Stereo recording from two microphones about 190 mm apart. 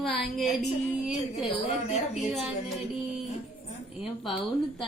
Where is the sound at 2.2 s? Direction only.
Centre (ahead or behind).